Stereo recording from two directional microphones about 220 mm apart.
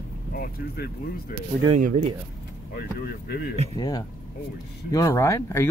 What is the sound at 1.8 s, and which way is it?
Speech, 35° right (ahead or behind).